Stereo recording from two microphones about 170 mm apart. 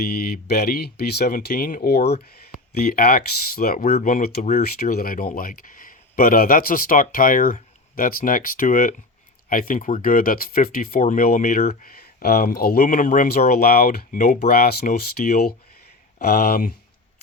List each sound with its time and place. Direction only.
0.0 s speech: 65° left (ahead or behind); by 4.6 s 45° left (ahead or behind)
4.6 s speech: 65° left (ahead or behind); by 11.9 s 45° left (ahead or behind)
11.9 s speech: 60° left (ahead or behind)